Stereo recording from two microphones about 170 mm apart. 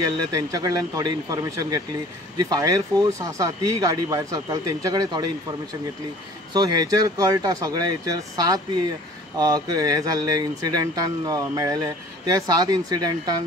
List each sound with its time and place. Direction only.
0.0 s speech: 20° right (ahead or behind)
6.5 s speech: 25° right (ahead or behind)